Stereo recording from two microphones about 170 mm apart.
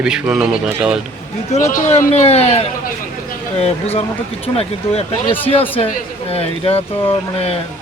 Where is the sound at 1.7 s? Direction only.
40° left (ahead or behind).